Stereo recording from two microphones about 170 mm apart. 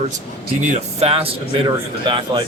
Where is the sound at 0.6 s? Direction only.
40° right (ahead or behind).